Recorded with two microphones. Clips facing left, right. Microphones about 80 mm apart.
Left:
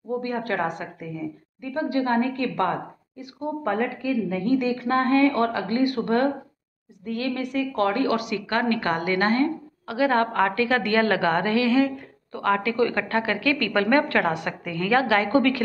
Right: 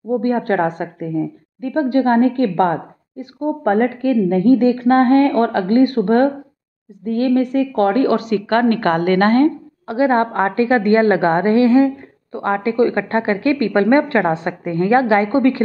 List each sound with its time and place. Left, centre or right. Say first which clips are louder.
0.2 s a woman's voice: right 9 dB; right
4.6 s a woman's voice: right 10 dB; right
9.8 s a woman's voice: right 6 dB; right